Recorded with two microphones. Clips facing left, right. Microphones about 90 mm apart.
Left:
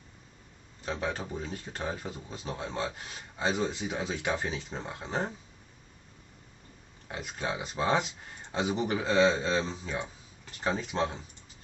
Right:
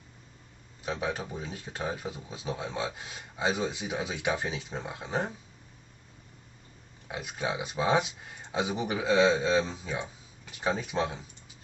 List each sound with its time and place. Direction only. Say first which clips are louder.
0.8 s speech: right 1 dB; 5° right (ahead or behind)
7.1 s speech: right 2 dB; 5° right (ahead or behind)